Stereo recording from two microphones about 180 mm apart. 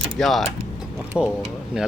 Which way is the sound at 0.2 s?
Centre (ahead or behind).